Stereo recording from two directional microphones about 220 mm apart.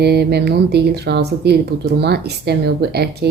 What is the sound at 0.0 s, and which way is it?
Speech, 45° right (ahead or behind).